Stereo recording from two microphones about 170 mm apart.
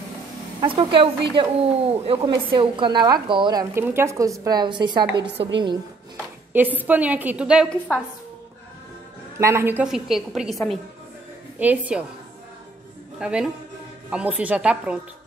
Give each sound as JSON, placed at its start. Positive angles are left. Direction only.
{"t": 0.6, "sound": "a woman's voice", "side_deg": -30}
{"t": 3.7, "sound": "a woman's voice", "side_deg": -15}
{"t": 6.5, "sound": "a woman's voice", "side_deg": -10}
{"t": 9.4, "sound": "a woman's voice", "side_deg": -15}
{"t": 9.8, "sound": "a woman's voice", "side_deg": 0}
{"t": 11.6, "sound": "a woman's voice", "side_deg": -10}
{"t": 13.2, "sound": "a woman's voice", "side_deg": -5}